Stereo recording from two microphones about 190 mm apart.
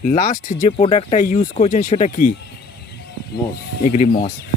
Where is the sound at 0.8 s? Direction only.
30° left (ahead or behind).